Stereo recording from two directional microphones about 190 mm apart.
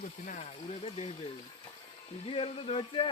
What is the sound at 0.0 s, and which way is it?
Speech, 40° left (ahead or behind).